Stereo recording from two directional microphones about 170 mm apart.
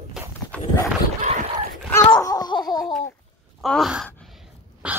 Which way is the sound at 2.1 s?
20° left (ahead or behind).